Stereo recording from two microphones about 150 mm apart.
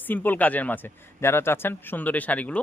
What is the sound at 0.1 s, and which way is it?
Speech, 10° left (ahead or behind).